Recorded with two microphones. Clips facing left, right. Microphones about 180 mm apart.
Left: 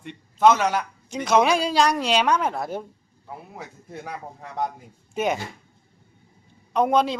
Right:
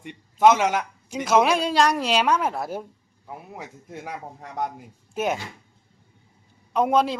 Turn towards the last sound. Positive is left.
turn(degrees=-5)  # may be behind; listen again after turning